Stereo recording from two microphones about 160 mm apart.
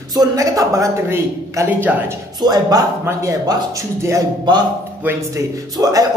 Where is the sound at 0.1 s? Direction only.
25° right (ahead or behind).